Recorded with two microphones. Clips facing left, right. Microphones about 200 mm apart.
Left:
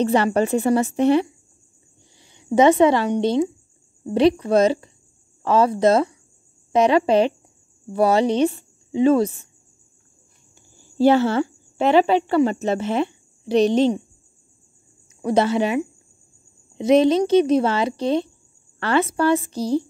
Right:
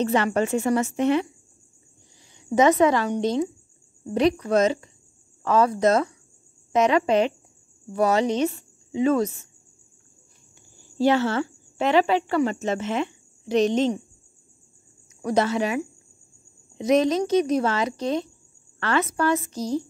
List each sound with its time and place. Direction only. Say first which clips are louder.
0.0 s a woman's voice: left 4 dB; 35° left (ahead or behind)
11.1 s speech: left 5 dB; 35° left (ahead or behind)
15.2 s a woman's voice: left 4 dB; 30° left (ahead or behind)